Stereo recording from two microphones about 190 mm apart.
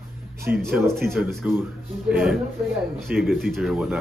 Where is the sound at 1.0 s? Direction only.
Centre (ahead or behind).